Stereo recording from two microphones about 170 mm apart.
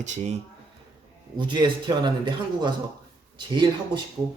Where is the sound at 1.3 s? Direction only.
25° right (ahead or behind).